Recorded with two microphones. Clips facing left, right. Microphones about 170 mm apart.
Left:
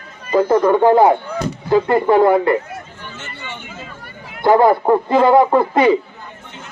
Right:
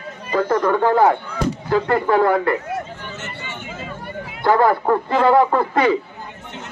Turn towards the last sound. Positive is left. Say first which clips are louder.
# left 4 dB
turn(degrees=15)  # may be behind; listen again after turning